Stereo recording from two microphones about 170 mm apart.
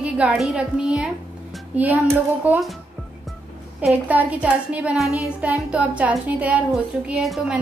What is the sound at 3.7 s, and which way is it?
A woman's voice, 10° right (ahead or behind).